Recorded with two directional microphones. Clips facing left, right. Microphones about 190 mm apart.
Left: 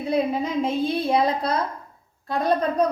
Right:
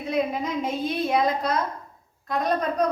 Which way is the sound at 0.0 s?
30° left (ahead or behind).